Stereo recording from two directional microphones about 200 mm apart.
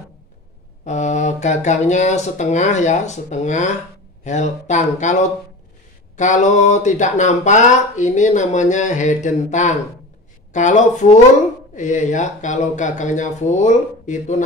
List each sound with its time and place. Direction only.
0.8 s speech: 35° left (ahead or behind)